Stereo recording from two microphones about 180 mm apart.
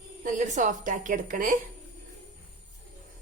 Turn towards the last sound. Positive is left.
turn(degrees=-50)  # may be behind; listen again after turning